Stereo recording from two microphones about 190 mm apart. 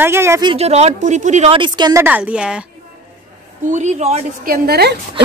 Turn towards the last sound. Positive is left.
turn(degrees=-60)  # may be behind; listen again after turning